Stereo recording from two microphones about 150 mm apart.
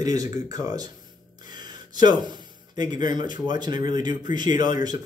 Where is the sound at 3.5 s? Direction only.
30° right (ahead or behind).